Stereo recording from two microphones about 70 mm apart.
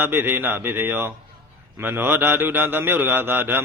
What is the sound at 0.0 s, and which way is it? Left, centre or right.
A man's voice, right.